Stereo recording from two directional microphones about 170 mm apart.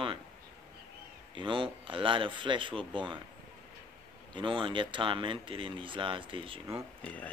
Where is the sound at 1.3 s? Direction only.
30° right (ahead or behind).